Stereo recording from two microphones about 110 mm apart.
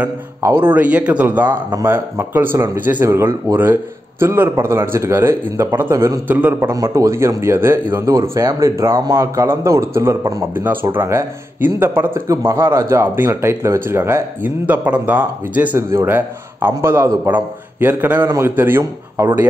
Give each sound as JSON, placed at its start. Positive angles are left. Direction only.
{"t": 0.4, "sound": "speech", "side_deg": -20}
{"t": 6.7, "sound": "speech", "side_deg": -30}